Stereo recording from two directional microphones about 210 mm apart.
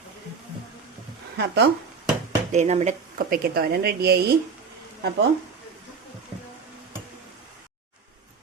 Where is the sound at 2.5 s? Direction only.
30° right (ahead or behind); by 4.2 s 50° right (ahead or behind).